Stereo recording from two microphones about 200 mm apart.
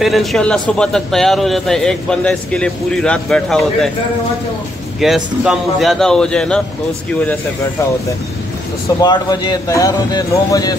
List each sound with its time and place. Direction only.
0.0 s a man's voice: centre (ahead or behind)
5.0 s a man's voice: centre (ahead or behind)
9.0 s speech: 20° left (ahead or behind)